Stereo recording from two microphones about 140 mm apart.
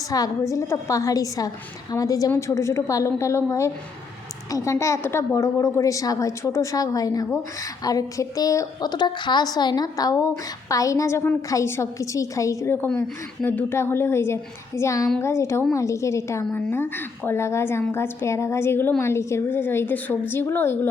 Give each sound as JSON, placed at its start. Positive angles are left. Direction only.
{"t": 0.1, "sound": "a woman's voice", "side_deg": 25}